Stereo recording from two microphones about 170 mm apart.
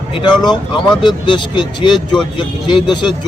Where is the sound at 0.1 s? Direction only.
25° left (ahead or behind).